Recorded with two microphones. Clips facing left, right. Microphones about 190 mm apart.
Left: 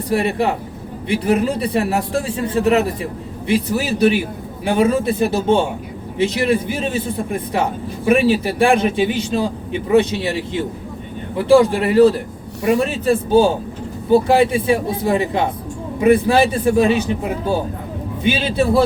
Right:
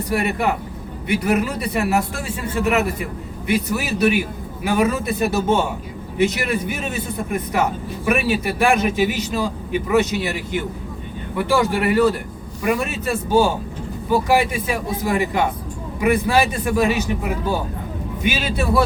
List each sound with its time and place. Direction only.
0.1 s a man's voice: 30° left (ahead or behind)